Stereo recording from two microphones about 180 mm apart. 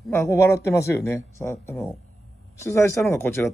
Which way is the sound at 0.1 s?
15° left (ahead or behind).